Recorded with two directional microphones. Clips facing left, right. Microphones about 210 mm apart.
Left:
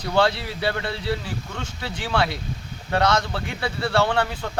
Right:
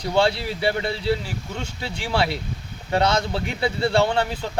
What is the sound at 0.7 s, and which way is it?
Speech, 20° right (ahead or behind).